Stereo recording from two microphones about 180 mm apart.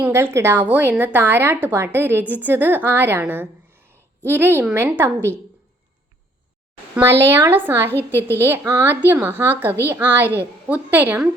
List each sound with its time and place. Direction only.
0.0 s a woman's voice: 15° right (ahead or behind)
6.9 s a woman's voice: 15° right (ahead or behind)